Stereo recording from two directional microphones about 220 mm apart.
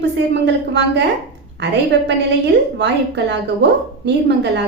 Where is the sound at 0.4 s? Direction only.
50° right (ahead or behind).